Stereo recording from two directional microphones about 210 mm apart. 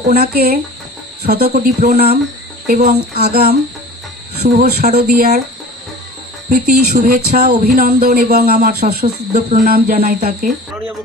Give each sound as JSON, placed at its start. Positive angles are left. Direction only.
{"t": 0.1, "sound": "speech", "side_deg": -45}
{"t": 6.5, "sound": "speech", "side_deg": -45}